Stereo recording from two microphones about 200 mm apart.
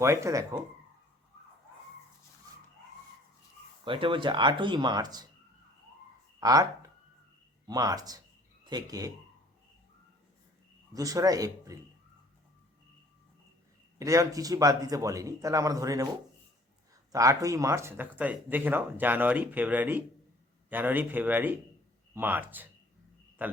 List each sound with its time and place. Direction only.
0.0 s speech: 15° right (ahead or behind)
3.8 s speech: 25° right (ahead or behind)
6.4 s speech: 15° right (ahead or behind)
10.9 s speech: 15° right (ahead or behind)
14.0 s speech: 15° right (ahead or behind)
17.1 s speech: 15° right (ahead or behind)